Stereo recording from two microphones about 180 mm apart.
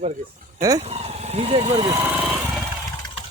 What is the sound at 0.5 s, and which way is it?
Speech, 20° right (ahead or behind).